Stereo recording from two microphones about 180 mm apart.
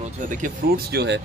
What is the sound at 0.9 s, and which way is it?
Speech, 75° right (ahead or behind).